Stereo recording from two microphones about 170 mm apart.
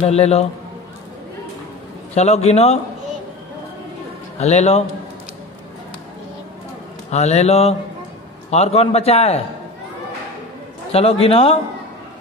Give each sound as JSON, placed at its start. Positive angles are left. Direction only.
{"t": 0.0, "sound": "a man's voice", "side_deg": 40}
{"t": 2.1, "sound": "a man's voice", "side_deg": 40}
{"t": 4.4, "sound": "a man's voice", "side_deg": 40}
{"t": 7.1, "sound": "a man's voice", "side_deg": 40}
{"t": 10.9, "sound": "a man's voice", "side_deg": 35}